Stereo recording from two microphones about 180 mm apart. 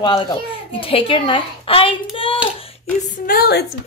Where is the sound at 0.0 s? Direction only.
25° left (ahead or behind).